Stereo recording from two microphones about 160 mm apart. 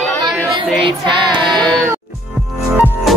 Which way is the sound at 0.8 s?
30° right (ahead or behind).